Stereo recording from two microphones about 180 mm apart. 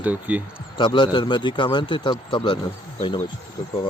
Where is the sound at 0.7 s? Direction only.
25° left (ahead or behind).